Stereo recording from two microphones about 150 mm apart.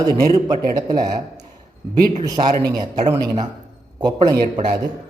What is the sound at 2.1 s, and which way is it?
A man's voice, 30° right (ahead or behind).